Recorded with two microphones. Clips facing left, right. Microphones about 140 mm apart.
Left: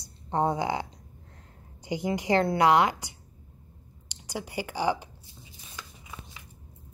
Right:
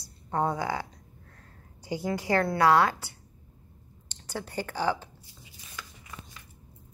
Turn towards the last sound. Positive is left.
turn(degrees=15)  # may be behind; listen again after turning